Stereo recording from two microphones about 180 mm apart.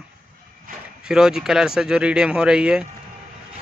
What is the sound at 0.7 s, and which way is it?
Speech, 50° right (ahead or behind).